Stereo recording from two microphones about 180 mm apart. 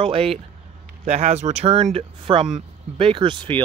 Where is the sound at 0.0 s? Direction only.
30° right (ahead or behind).